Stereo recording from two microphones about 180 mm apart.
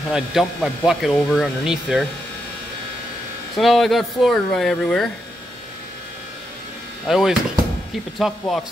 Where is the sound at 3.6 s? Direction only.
Centre (ahead or behind).